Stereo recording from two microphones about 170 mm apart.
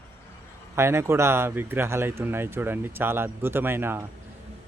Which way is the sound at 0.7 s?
15° right (ahead or behind).